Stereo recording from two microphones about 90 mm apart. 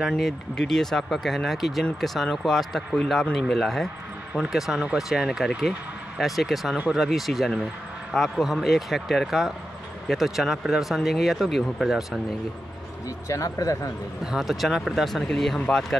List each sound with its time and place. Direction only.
0.1 s speech: 5° left (ahead or behind)
13.3 s speech: 40° left (ahead or behind)
14.2 s speech: 5° right (ahead or behind)